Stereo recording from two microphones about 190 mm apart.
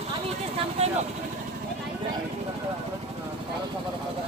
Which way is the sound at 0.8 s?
35° right (ahead or behind).